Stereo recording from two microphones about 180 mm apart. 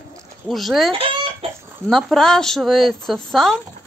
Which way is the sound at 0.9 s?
30° right (ahead or behind).